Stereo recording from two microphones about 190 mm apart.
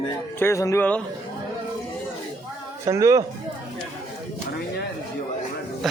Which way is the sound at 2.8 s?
15° right (ahead or behind).